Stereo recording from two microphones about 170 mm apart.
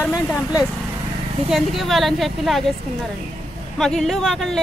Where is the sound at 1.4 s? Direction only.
Centre (ahead or behind).